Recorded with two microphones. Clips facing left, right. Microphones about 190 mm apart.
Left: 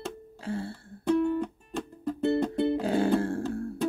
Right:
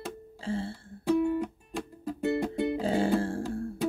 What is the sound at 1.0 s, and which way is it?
Music, 10° right (ahead or behind).